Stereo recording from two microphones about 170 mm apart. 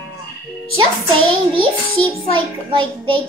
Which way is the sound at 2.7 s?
30° right (ahead or behind).